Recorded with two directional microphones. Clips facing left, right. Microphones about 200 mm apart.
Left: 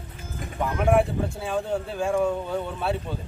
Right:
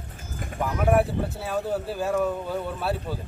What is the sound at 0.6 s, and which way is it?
Speech, 5° right (ahead or behind).